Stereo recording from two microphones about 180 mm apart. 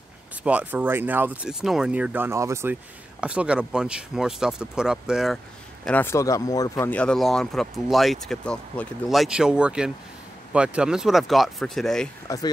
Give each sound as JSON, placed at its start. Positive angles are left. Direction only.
{"t": 0.4, "sound": "speech", "side_deg": -5}
{"t": 5.9, "sound": "speech", "side_deg": 10}
{"t": 12.3, "sound": "speech", "side_deg": 20}